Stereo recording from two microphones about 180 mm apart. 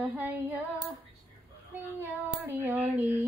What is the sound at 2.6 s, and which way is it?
Female singing, 10° right (ahead or behind).